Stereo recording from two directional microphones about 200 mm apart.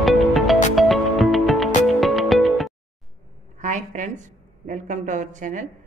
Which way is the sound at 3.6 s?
35° right (ahead or behind).